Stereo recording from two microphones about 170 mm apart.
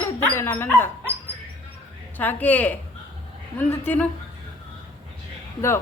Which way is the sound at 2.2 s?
10° left (ahead or behind).